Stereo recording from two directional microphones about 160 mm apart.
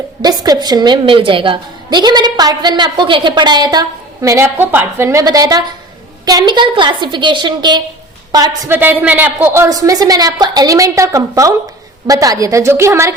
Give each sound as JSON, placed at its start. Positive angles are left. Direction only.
{"t": 0.2, "sound": "a woman's voice", "side_deg": -25}
{"t": 8.7, "sound": "a woman's voice", "side_deg": -10}